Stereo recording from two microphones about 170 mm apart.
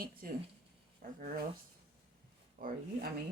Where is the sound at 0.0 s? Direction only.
60° right (ahead or behind).